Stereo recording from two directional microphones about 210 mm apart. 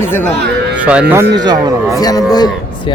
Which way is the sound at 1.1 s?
15° right (ahead or behind).